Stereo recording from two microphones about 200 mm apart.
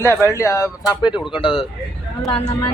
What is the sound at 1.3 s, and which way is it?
Speech, 25° left (ahead or behind).